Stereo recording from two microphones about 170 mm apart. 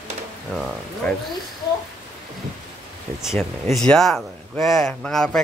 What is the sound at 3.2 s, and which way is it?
Speech, centre (ahead or behind).